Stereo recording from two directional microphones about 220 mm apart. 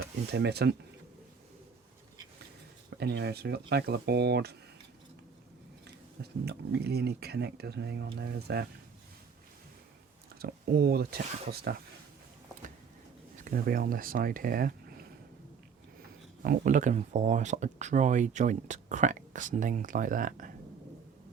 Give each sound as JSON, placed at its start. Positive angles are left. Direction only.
{"t": 0.3, "sound": "speech", "side_deg": -50}
{"t": 3.0, "sound": "speech", "side_deg": -50}
{"t": 6.4, "sound": "speech", "side_deg": -45}
{"t": 10.4, "sound": "speech", "side_deg": -45}
{"t": 13.4, "sound": "speech", "side_deg": -40}
{"t": 16.4, "sound": "speech", "side_deg": -40}